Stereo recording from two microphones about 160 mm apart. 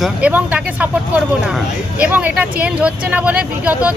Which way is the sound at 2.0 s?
10° right (ahead or behind).